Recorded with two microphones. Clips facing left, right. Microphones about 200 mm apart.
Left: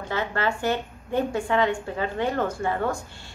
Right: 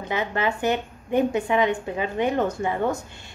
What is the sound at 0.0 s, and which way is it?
A woman's voice, 15° right (ahead or behind).